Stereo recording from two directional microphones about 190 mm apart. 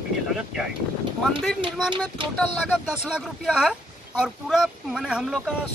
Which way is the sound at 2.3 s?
Centre (ahead or behind).